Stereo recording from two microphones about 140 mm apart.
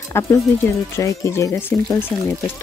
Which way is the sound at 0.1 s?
20° left (ahead or behind).